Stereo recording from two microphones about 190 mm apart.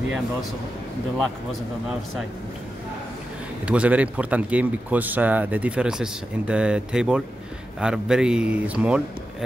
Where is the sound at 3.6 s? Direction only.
5° right (ahead or behind).